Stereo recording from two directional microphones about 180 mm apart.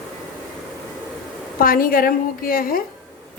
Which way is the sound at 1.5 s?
50° left (ahead or behind).